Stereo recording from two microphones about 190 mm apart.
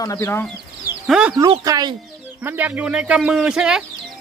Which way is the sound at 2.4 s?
10° right (ahead or behind).